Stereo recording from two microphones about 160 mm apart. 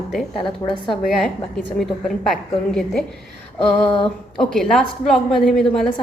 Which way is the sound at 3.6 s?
35° left (ahead or behind).